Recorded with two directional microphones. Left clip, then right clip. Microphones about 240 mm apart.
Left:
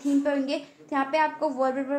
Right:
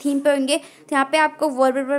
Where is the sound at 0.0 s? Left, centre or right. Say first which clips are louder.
Right 6 dB; right.